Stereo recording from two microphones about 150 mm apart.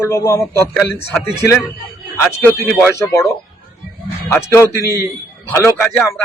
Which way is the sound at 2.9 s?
20° left (ahead or behind).